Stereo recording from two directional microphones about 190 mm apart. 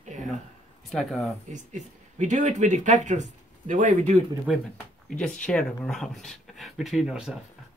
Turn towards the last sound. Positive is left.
turn(degrees=0)  # may be behind; listen again after turning